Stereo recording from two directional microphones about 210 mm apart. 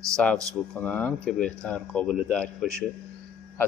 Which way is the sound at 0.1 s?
5° left (ahead or behind).